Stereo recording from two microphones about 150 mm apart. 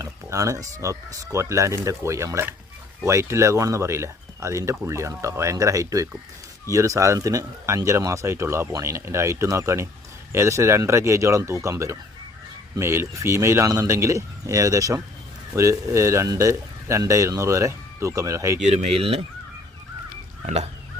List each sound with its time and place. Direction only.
0.0 s a sound: 20° right (ahead or behind)
0.8 s speech: 20° right (ahead or behind)
18.6 s speech: 50° right (ahead or behind)